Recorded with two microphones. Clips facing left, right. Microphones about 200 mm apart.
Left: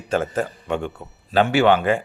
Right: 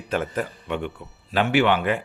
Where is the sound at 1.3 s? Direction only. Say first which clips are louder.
Left 4 dB; 30° left (ahead or behind).